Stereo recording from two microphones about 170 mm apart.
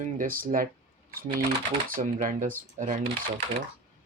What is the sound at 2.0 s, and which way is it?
Speech, 50° right (ahead or behind).